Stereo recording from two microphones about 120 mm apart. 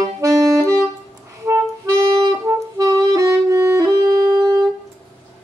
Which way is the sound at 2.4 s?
25° right (ahead or behind).